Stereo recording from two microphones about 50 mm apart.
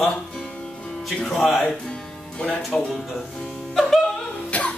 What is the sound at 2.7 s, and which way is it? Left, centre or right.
Speech, centre.